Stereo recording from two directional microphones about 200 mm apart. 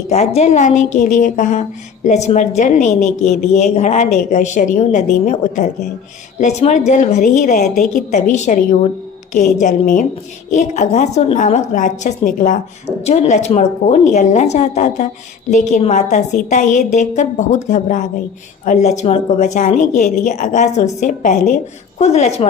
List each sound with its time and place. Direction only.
0.1 s a woman's voice: 30° left (ahead or behind)